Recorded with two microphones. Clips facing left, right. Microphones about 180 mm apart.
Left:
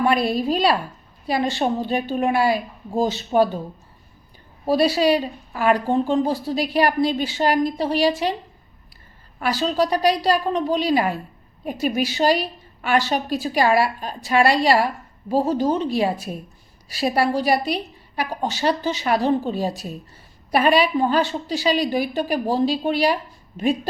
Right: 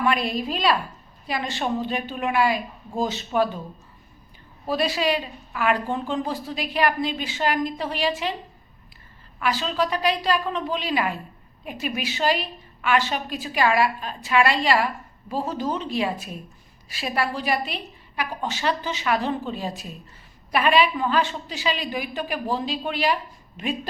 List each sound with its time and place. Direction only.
0.0 s a woman's voice: 35° left (ahead or behind)
4.6 s a woman's voice: 35° left (ahead or behind)
9.4 s a woman's voice: 40° left (ahead or behind)